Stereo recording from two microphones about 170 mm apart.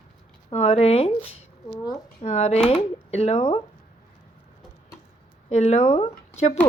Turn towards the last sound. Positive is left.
turn(degrees=40)  # may be behind; listen again after turning